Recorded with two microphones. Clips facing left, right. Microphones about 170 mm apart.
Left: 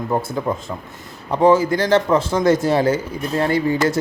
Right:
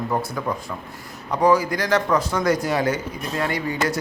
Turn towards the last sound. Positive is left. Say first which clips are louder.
# left 6 dB
turn(degrees=25)  # may be behind; listen again after turning